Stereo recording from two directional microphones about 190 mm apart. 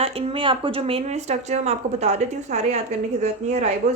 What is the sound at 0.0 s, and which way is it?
Speech, 30° right (ahead or behind).